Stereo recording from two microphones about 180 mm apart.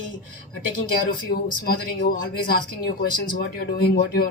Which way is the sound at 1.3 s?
55° left (ahead or behind).